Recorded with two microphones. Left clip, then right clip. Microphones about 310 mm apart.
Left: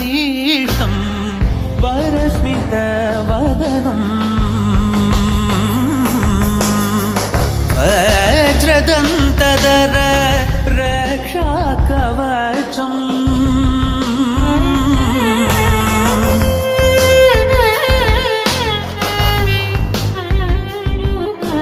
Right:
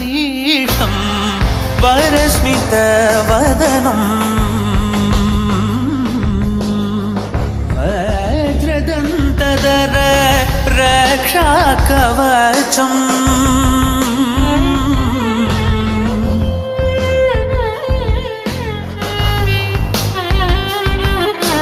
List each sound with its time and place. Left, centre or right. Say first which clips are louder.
0.2 s music: right 2 dB; centre
1.8 s music: right 6 dB; right
4.9 s music: right 1 dB; centre
7.9 s music: left 6 dB; left; by 10.4 s centre
10.8 s music: right 7 dB; right
14.4 s music: even; centre
15.2 s music: left 2 dB; centre
16.0 s music: left 5 dB; left
16.8 s music: left 4 dB; left